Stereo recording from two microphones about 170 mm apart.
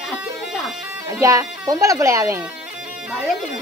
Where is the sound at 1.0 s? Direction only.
20° right (ahead or behind).